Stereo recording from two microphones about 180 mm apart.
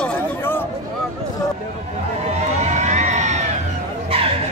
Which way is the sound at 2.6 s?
40° right (ahead or behind).